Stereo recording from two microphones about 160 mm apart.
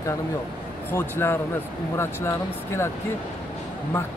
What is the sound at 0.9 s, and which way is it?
Speech, 15° left (ahead or behind).